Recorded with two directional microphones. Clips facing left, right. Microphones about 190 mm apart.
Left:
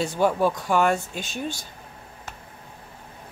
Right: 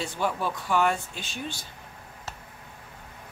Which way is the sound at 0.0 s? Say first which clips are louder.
Left 7 dB; 45° left (ahead or behind).